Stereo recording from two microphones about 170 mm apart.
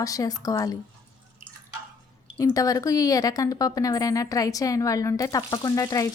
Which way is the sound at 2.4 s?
20° left (ahead or behind).